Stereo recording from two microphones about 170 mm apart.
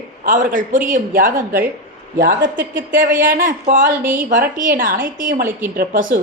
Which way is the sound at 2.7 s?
55° right (ahead or behind).